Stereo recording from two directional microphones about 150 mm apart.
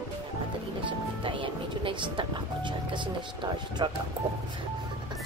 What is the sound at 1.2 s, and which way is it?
Music, 35° right (ahead or behind).